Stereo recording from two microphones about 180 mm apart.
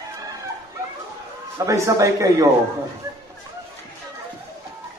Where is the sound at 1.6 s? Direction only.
15° right (ahead or behind).